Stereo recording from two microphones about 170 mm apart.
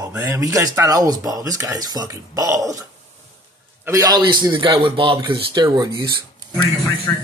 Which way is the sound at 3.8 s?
20° right (ahead or behind).